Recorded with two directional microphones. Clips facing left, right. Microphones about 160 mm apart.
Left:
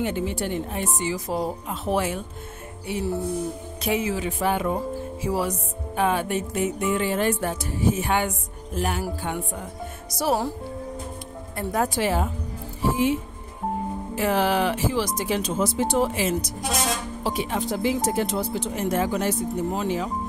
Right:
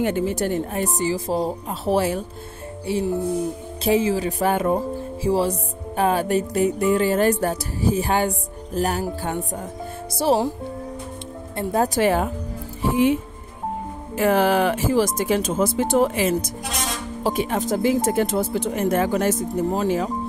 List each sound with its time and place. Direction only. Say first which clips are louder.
0.0 s music: right 4 dB; 45° right (ahead or behind)
5.2 s music: right 6 dB; 30° right (ahead or behind)
10.1 s speech: right 4 dB; 30° right (ahead or behind)
11.5 s speech: right 4 dB; 30° right (ahead or behind)
11.9 s speech: right 5 dB; 55° right (ahead or behind)